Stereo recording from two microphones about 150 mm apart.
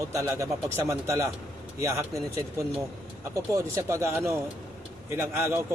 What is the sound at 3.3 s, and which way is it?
Speech, 20° right (ahead or behind).